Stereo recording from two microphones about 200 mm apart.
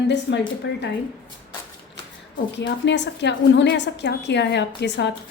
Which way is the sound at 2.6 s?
60° left (ahead or behind).